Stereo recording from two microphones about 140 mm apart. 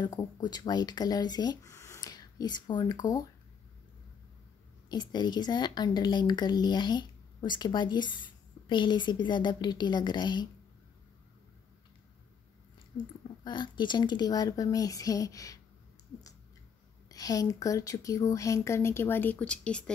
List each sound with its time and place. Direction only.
0.0 s speech: 30° left (ahead or behind)
1.7 s speech: 20° left (ahead or behind)
4.8 s speech: 30° left (ahead or behind)
13.4 s speech: 35° left (ahead or behind)
17.1 s speech: 25° left (ahead or behind); by 19.8 s 10° left (ahead or behind)